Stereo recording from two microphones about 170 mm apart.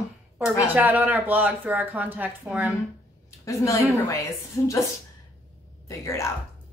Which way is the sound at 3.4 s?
20° left (ahead or behind).